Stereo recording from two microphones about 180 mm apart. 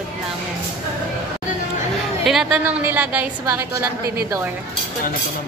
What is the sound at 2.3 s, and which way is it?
A woman's voice, centre (ahead or behind).